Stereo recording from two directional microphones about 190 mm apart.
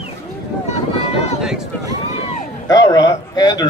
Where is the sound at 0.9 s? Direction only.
30° left (ahead or behind).